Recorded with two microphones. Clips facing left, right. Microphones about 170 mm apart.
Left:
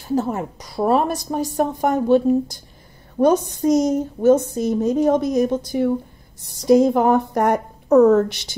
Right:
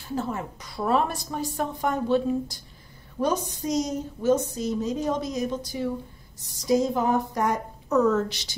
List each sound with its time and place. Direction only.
0.1 s a woman's voice: 40° left (ahead or behind)